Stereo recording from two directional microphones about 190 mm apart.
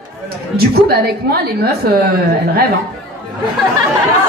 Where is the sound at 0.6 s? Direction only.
55° right (ahead or behind).